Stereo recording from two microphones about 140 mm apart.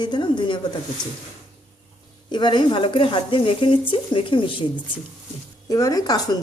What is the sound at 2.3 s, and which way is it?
Speech, 30° left (ahead or behind).